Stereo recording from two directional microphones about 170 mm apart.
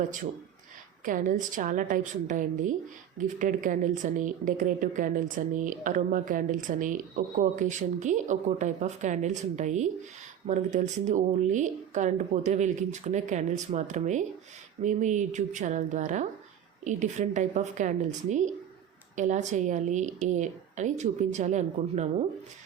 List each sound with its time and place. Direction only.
1.0 s speech: 50° right (ahead or behind)